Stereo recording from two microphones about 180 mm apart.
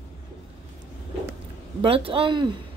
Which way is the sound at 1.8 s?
30° right (ahead or behind).